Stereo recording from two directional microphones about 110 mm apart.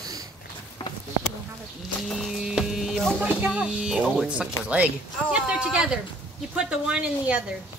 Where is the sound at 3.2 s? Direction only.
10° right (ahead or behind).